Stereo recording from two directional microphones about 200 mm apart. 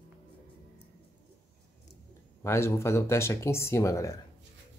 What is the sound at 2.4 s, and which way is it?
Speech, 15° left (ahead or behind).